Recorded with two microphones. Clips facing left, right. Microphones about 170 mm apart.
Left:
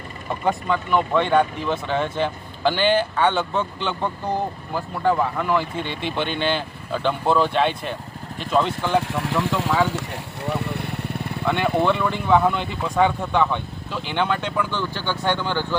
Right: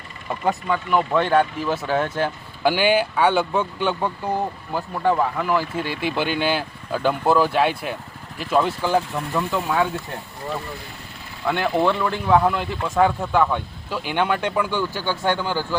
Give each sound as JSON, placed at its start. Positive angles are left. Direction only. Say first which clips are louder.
{"t": 0.4, "sound": "speech", "louder": "even", "side_deg": -5}
{"t": 9.0, "sound": "speech", "louder": "left 2 dB", "side_deg": 85}
{"t": 10.4, "sound": "vehicle", "louder": "left 5 dB", "side_deg": 70}
{"t": 11.4, "sound": "speech", "louder": "even", "side_deg": 0}